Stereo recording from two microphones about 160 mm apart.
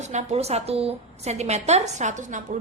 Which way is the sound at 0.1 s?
45° right (ahead or behind).